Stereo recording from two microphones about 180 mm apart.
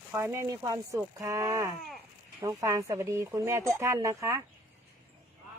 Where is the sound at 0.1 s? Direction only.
15° right (ahead or behind).